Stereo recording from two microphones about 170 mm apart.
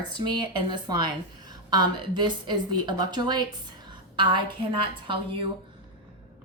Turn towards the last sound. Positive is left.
turn(degrees=-30)  # may be behind; listen again after turning